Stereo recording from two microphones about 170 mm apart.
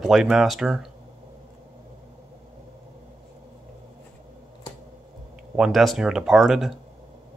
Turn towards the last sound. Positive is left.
turn(degrees=0)  # may be behind; listen again after turning